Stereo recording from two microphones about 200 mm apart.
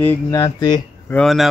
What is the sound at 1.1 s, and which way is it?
Music, 5° left (ahead or behind).